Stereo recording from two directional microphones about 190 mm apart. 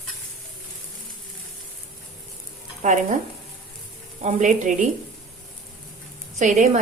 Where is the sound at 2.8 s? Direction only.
40° right (ahead or behind).